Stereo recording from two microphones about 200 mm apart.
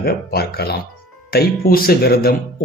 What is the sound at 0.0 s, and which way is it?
Speech, 50° left (ahead or behind).